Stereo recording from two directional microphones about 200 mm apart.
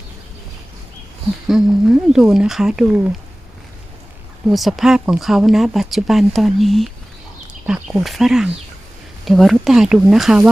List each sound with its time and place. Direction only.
1.5 s speech: centre (ahead or behind)
4.4 s speech: centre (ahead or behind)